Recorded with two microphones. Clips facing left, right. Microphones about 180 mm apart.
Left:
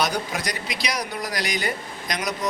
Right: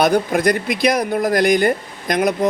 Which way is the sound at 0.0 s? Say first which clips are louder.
Right 10 dB; 55° right (ahead or behind).